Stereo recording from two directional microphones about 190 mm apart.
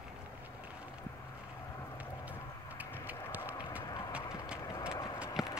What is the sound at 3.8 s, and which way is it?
Clip-clop, 15° left (ahead or behind).